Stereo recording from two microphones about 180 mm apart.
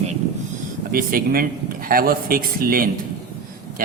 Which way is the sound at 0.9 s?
55° right (ahead or behind).